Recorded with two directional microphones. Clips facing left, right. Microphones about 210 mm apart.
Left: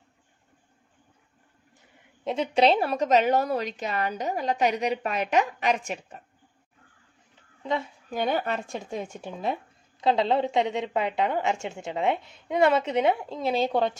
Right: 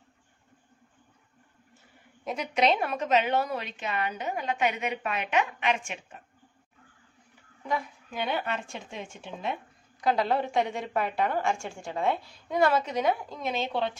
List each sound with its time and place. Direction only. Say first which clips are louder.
2.2 s a woman's voice: left 4 dB; 30° left (ahead or behind)
7.6 s a woman's voice: left 3 dB; 25° left (ahead or behind)
8.1 s a woman's voice: left 4 dB; 40° left (ahead or behind)
9.9 s a woman's voice: left 3 dB; 25° left (ahead or behind); by 13.9 s 45° left (ahead or behind)